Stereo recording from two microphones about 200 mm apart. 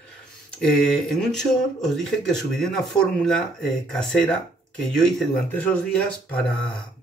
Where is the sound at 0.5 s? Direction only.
5° left (ahead or behind).